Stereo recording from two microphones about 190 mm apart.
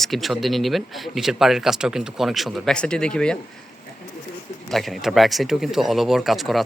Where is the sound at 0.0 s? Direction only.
Centre (ahead or behind).